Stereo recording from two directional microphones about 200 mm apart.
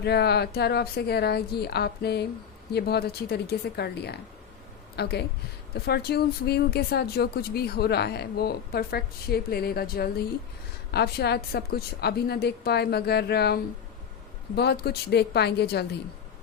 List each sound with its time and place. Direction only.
0.0 s speech: 55° left (ahead or behind)